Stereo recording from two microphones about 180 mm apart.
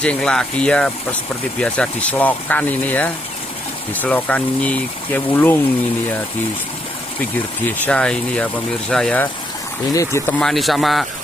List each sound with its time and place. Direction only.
0.0 s speech: 5° left (ahead or behind)
7.8 s speech: 5° left (ahead or behind)
10.4 s speech: centre (ahead or behind)